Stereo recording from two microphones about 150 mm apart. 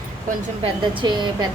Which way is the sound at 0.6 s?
30° right (ahead or behind).